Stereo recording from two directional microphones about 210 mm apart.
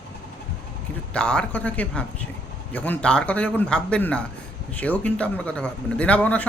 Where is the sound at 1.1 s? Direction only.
5° left (ahead or behind).